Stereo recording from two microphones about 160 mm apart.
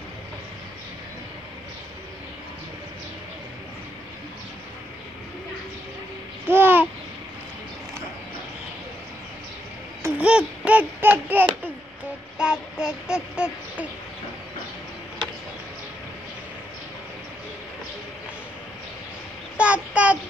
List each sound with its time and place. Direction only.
6.4 s babbling: 15° right (ahead or behind)
10.0 s a sound: 10° right (ahead or behind)
12.4 s child singing: 5° right (ahead or behind)
12.8 s speech: 5° right (ahead or behind)
19.5 s child singing: 5° right (ahead or behind)